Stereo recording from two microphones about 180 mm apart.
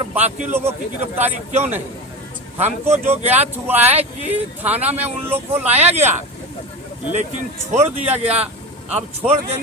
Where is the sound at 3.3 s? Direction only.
10° right (ahead or behind).